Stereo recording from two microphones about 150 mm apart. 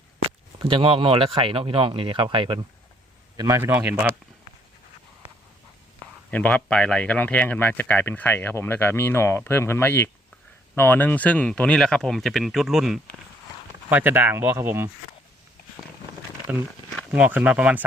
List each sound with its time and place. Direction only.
0.6 s speech: 35° right (ahead or behind)
3.3 s speech: 20° right (ahead or behind)
6.3 s speech: 10° left (ahead or behind)
13.9 s speech: 15° right (ahead or behind)
17.1 s speech: 10° right (ahead or behind)